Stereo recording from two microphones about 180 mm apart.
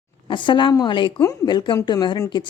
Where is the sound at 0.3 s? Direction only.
25° left (ahead or behind).